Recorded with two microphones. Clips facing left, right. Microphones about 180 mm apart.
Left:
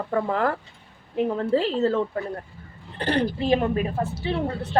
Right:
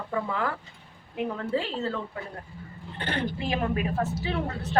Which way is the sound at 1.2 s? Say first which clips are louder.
Left 6 dB; 35° left (ahead or behind).